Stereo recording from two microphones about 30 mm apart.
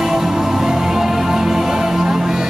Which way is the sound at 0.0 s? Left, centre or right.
Centre.